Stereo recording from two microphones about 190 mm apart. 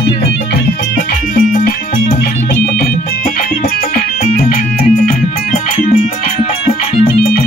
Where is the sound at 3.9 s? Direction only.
45° left (ahead or behind).